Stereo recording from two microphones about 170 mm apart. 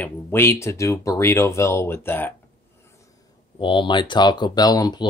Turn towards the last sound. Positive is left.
turn(degrees=25)  # may be behind; listen again after turning